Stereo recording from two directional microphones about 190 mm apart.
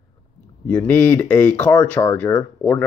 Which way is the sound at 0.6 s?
10° left (ahead or behind).